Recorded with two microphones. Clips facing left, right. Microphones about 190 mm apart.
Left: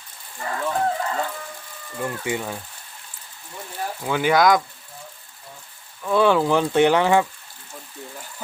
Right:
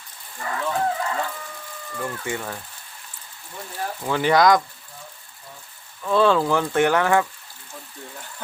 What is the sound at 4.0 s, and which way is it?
Speech, 5° left (ahead or behind).